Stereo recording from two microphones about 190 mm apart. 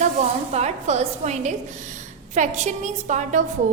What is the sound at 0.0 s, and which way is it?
A woman's voice, 35° right (ahead or behind).